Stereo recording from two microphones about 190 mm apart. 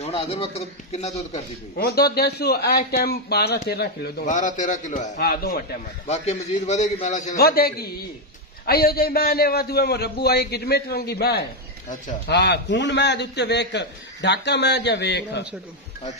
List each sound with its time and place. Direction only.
0.0 s speech: 30° left (ahead or behind)
1.8 s a man's voice: 55° left (ahead or behind)
4.3 s speech: 40° left (ahead or behind)
5.1 s a man's voice: 55° left (ahead or behind)
6.0 s speech: 35° left (ahead or behind)
7.3 s a man's voice: 55° left (ahead or behind)